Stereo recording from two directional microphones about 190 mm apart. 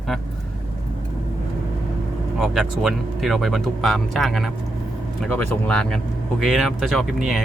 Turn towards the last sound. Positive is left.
turn(degrees=0)  # may be behind; listen again after turning